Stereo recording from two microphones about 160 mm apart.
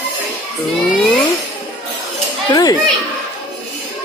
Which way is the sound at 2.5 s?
25° left (ahead or behind).